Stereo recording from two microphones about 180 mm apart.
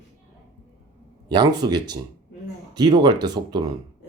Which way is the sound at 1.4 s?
25° right (ahead or behind).